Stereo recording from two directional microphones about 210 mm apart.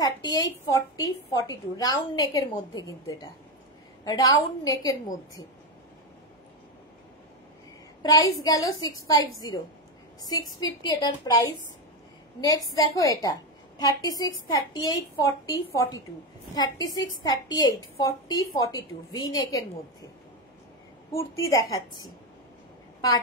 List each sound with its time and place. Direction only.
0.0 s a woman's voice: 20° left (ahead or behind)
8.0 s a woman's voice: 20° left (ahead or behind)
10.6 s a woman's voice: 20° left (ahead or behind)
12.4 s a woman's voice: 15° left (ahead or behind)
21.1 s a woman's voice: 15° left (ahead or behind)